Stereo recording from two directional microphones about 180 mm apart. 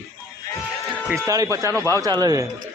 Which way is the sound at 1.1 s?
20° right (ahead or behind).